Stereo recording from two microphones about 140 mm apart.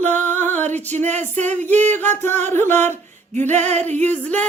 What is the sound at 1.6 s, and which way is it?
Music, 10° left (ahead or behind).